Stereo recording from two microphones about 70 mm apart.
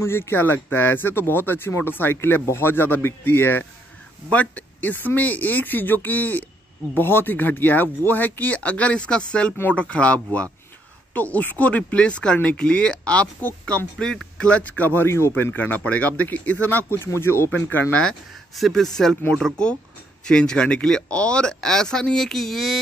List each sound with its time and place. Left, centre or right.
0.0 s speech: left
15.0 s speech: left
17.0 s speech: left
18.5 s speech: centre